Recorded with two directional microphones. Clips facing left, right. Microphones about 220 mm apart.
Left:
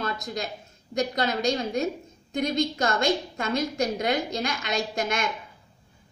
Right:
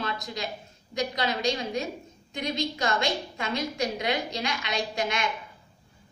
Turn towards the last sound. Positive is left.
turn(degrees=45)  # may be behind; listen again after turning